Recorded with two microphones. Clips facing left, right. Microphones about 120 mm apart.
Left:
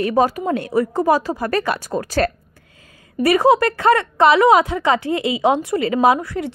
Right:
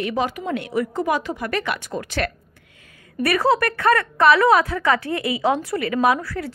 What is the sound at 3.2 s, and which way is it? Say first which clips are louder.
A woman's voice: left 5 dB; 25° left (ahead or behind).